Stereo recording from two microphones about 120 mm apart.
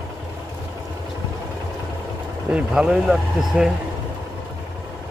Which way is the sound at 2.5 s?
10° right (ahead or behind).